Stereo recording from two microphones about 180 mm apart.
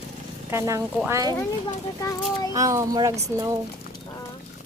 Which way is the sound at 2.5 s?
20° right (ahead or behind).